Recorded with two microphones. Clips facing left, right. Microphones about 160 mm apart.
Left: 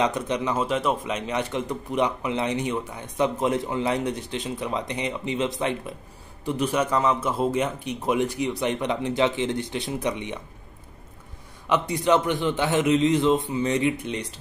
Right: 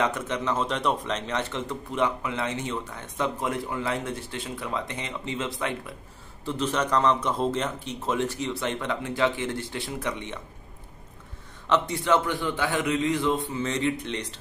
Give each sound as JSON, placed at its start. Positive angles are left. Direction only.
{"t": 0.0, "sound": "a man's voice", "side_deg": 15}
{"t": 11.7, "sound": "a man's voice", "side_deg": 15}